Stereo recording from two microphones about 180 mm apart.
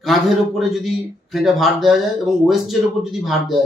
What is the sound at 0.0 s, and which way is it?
A man's voice, centre (ahead or behind).